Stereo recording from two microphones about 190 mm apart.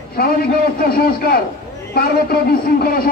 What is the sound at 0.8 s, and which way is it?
Speech, 55° left (ahead or behind).